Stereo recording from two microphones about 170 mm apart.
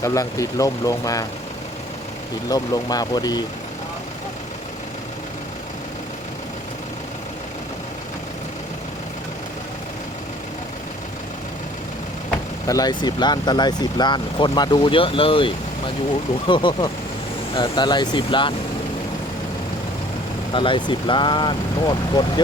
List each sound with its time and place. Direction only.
0.0 s speech: 20° left (ahead or behind)
2.5 s speech: 20° left (ahead or behind)
12.6 s speech: 20° left (ahead or behind)
20.5 s speech: 30° left (ahead or behind)